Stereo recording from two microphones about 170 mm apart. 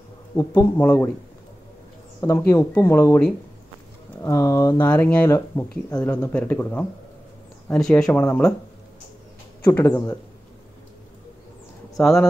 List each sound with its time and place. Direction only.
0.4 s speech: 15° left (ahead or behind)
2.1 s speech: 15° left (ahead or behind)
9.7 s a man's voice: 20° left (ahead or behind)
12.0 s speech: centre (ahead or behind)